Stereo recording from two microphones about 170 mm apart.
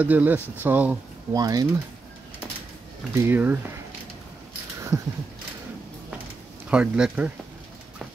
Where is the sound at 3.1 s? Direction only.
15° right (ahead or behind).